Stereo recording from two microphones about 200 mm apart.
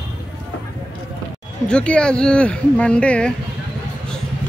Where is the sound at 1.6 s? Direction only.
5° left (ahead or behind).